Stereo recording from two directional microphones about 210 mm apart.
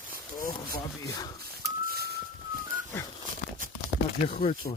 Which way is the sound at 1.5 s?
45° right (ahead or behind).